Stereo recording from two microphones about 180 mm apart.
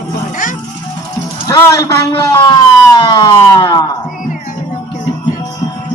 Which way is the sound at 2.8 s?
20° left (ahead or behind).